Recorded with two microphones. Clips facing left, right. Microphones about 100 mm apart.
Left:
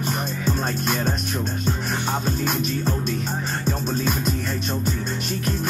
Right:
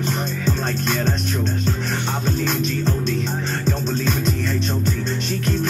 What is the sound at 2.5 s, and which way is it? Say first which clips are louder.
Music: right 2 dB; 10° left (ahead or behind).